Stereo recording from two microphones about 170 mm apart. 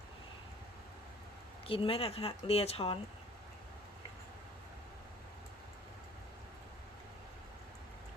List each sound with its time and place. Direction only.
1.6 s speech: 30° left (ahead or behind)